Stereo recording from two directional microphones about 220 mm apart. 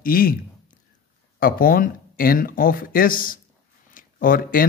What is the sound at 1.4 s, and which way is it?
Speech, 40° left (ahead or behind).